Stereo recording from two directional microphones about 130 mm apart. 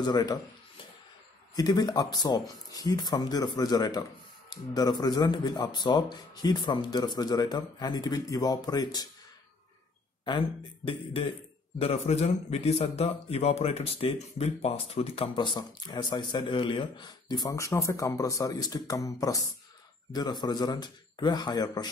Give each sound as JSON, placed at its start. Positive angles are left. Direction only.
{"t": 0.0, "sound": "speech", "side_deg": 35}
{"t": 1.5, "sound": "speech", "side_deg": 30}
{"t": 11.8, "sound": "speech", "side_deg": 55}